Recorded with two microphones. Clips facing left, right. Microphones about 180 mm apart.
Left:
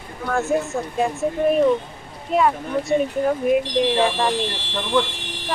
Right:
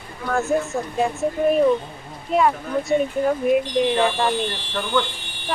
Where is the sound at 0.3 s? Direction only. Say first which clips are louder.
Even; centre (ahead or behind).